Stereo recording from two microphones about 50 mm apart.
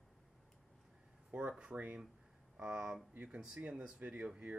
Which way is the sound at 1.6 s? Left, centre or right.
Right.